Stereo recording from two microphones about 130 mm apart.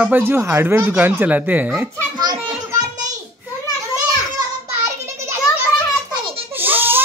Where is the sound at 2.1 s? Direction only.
30° right (ahead or behind).